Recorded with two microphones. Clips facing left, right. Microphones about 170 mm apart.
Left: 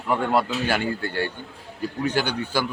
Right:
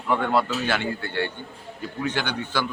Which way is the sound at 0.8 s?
40° left (ahead or behind).